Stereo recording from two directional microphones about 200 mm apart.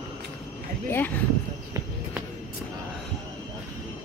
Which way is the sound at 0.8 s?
10° left (ahead or behind).